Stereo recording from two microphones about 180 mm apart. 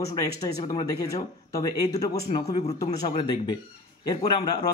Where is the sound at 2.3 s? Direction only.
35° left (ahead or behind).